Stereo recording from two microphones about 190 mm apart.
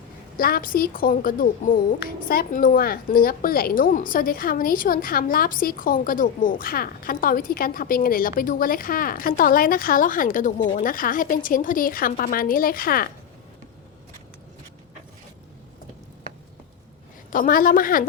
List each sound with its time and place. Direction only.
0.3 s a woman's voice: 50° left (ahead or behind)
17.3 s a woman's voice: 45° left (ahead or behind)